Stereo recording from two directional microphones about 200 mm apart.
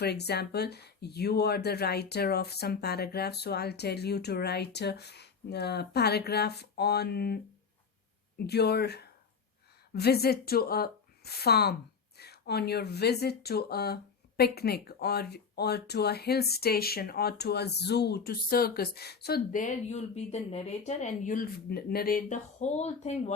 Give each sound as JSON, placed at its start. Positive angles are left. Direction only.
{"t": 0.0, "sound": "speech", "side_deg": 55}
{"t": 8.4, "sound": "speech", "side_deg": 55}